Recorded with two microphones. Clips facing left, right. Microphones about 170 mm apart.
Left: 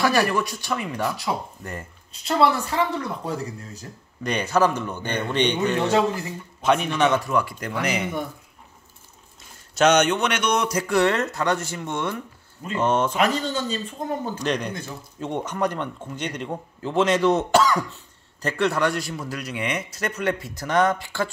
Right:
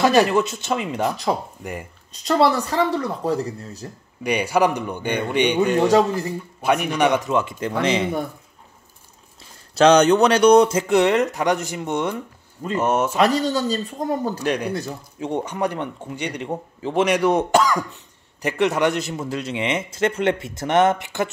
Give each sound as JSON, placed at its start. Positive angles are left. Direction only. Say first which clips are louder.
{"t": 0.0, "sound": "a man's voice", "louder": "right 5 dB", "side_deg": -20}
{"t": 2.2, "sound": "speech", "louder": "right 3 dB", "side_deg": -35}
{"t": 4.2, "sound": "a man's voice", "louder": "right 2 dB", "side_deg": -10}
{"t": 5.9, "sound": "speech", "louder": "right 4 dB", "side_deg": -35}
{"t": 6.6, "sound": "a man's voice", "louder": "right 1 dB", "side_deg": -10}
{"t": 9.4, "sound": "a man's voice", "louder": "right 4 dB", "side_deg": -30}
{"t": 12.7, "sound": "a man's voice", "louder": "right 1 dB", "side_deg": -10}
{"t": 13.2, "sound": "speech", "louder": "right 4 dB", "side_deg": -35}
{"t": 14.4, "sound": "a man's voice", "louder": "right 3 dB", "side_deg": -10}